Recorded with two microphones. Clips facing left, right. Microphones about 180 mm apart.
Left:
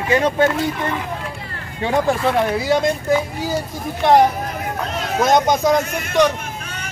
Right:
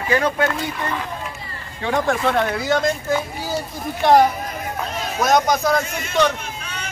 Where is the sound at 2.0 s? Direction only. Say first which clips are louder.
Left 2 dB; 5° left (ahead or behind).